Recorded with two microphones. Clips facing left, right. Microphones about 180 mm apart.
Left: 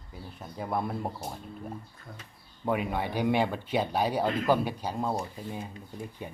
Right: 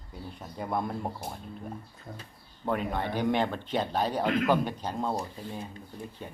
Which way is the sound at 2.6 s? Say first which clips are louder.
Left 1 dB; 10° left (ahead or behind).